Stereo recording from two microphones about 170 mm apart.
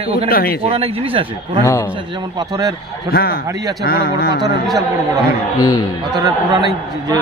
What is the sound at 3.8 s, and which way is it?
Speech, 65° left (ahead or behind).